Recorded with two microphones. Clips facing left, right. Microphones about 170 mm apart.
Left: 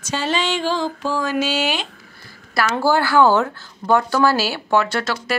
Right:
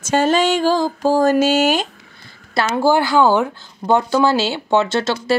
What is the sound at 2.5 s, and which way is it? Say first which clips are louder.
Speech: right 2 dB; 15° right (ahead or behind).